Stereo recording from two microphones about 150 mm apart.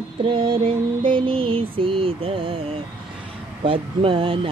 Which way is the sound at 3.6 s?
35° right (ahead or behind).